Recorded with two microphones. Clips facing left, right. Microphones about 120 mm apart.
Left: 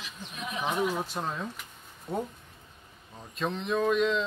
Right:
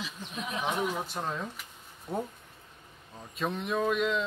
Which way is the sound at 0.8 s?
5° left (ahead or behind).